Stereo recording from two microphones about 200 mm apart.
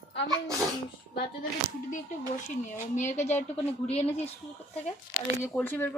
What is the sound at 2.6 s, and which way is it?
Speech, 40° left (ahead or behind).